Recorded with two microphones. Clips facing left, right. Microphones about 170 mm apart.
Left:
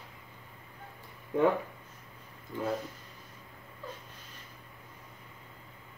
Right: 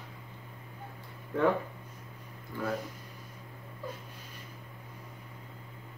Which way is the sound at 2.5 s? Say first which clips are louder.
Left 1 dB; 20° left (ahead or behind).